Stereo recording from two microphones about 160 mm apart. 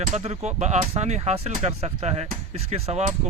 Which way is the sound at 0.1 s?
45° right (ahead or behind).